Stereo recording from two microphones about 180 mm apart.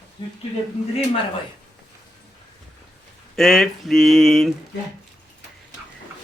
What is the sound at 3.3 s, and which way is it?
Speech, centre (ahead or behind).